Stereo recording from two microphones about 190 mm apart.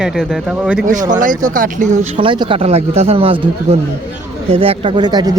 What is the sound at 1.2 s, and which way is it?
Speech, 45° right (ahead or behind).